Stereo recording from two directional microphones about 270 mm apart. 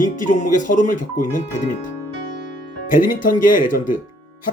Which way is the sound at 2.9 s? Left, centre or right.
Left.